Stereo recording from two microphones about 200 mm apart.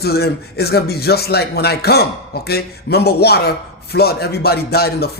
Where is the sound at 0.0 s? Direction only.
55° left (ahead or behind).